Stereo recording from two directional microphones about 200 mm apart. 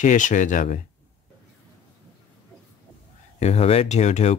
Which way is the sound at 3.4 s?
30° left (ahead or behind).